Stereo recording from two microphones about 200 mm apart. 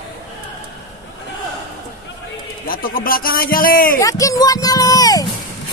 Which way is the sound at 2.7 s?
45° left (ahead or behind).